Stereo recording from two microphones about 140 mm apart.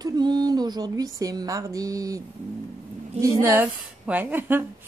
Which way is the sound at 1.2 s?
25° right (ahead or behind).